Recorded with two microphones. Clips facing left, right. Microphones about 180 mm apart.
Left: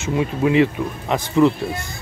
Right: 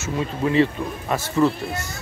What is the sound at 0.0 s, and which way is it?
Speech, 15° left (ahead or behind).